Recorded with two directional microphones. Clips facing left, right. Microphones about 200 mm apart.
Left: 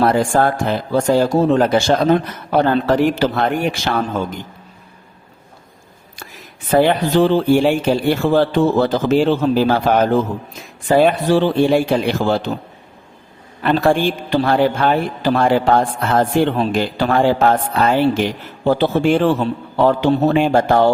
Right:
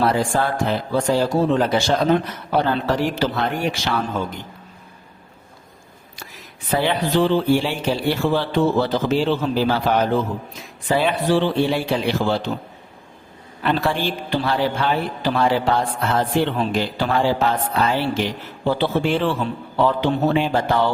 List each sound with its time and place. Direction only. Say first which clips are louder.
0.0 s a man's voice: left 5 dB; 50° left (ahead or behind)
6.7 s a man's voice: left 6 dB; 50° left (ahead or behind)
13.6 s a man's voice: left 6 dB; 50° left (ahead or behind)